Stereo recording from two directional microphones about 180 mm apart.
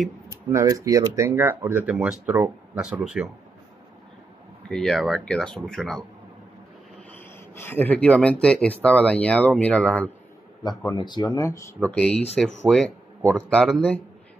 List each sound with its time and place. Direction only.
0.5 s speech: 15° right (ahead or behind)
4.6 s speech: centre (ahead or behind)
7.1 s speech: 10° left (ahead or behind)
11.0 s speech: 25° left (ahead or behind)
11.8 s speech: 5° left (ahead or behind)